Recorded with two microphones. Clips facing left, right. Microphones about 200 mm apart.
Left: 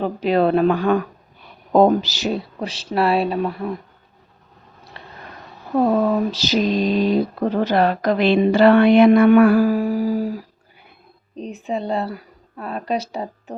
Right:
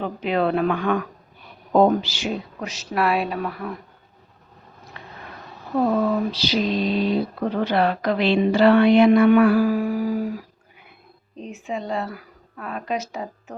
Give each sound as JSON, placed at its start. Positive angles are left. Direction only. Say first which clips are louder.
{"t": 0.0, "sound": "a woman's voice", "louder": "left 5 dB", "side_deg": 40}
{"t": 4.9, "sound": "a sound", "louder": "left 1 dB", "side_deg": 30}
{"t": 6.3, "sound": "speech", "louder": "left 3 dB", "side_deg": 45}
{"t": 11.3, "sound": "a woman's voice", "louder": "left 4 dB", "side_deg": 35}